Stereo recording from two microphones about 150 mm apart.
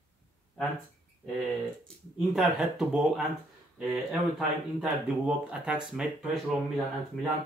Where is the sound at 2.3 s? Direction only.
Centre (ahead or behind).